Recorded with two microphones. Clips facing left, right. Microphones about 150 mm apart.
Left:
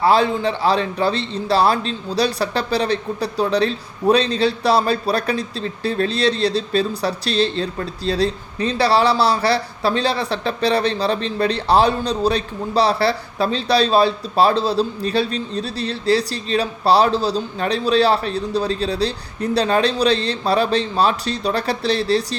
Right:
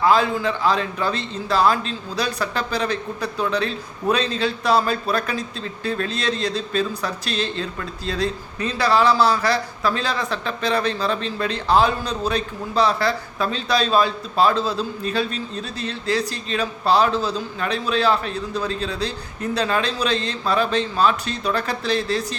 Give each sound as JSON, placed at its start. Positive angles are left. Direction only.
{"t": 0.0, "sound": "a man's voice", "side_deg": 35}